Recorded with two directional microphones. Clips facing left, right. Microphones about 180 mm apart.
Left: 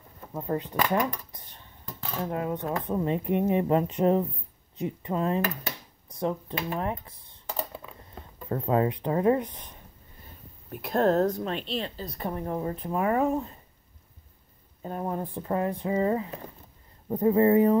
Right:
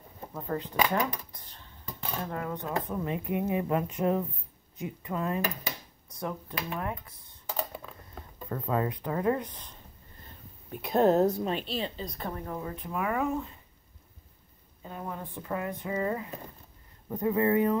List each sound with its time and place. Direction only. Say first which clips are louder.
0.3 s speech: left 4 dB; 20° left (ahead or behind)
2.2 s speech: left 7 dB; 20° left (ahead or behind)
8.5 s speech: left 5 dB; 25° left (ahead or behind)
10.7 s a woman's voice: even; centre (ahead or behind)
12.4 s speech: left 6 dB; 30° left (ahead or behind)
14.8 s speech: left 7 dB; 40° left (ahead or behind)